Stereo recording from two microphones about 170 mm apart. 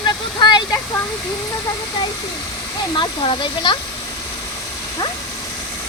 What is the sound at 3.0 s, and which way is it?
Speech, 30° left (ahead or behind).